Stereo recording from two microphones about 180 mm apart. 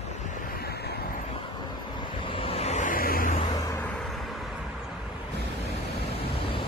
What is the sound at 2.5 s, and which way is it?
Vehicle, 40° left (ahead or behind).